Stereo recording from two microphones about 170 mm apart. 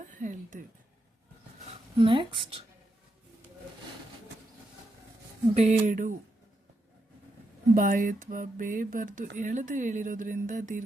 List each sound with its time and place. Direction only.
0.0 s a sound: 50° right (ahead or behind)
2.0 s speech: 30° right (ahead or behind)
5.5 s speech: 45° right (ahead or behind)
7.8 s speech: 50° right (ahead or behind)